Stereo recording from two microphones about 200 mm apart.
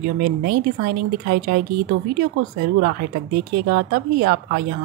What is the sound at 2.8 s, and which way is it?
Speech, 45° right (ahead or behind).